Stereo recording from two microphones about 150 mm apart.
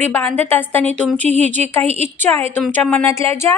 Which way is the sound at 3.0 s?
20° left (ahead or behind).